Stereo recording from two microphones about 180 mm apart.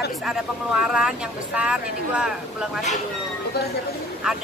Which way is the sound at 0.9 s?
5° right (ahead or behind).